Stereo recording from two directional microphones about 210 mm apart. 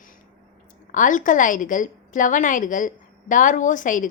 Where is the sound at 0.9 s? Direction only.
40° left (ahead or behind).